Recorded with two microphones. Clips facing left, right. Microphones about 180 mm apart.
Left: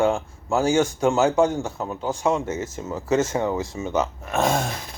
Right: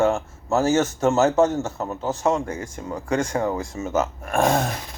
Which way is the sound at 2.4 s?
25° left (ahead or behind).